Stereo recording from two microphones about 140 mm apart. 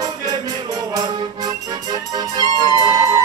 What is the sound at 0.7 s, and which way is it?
Music, 25° right (ahead or behind).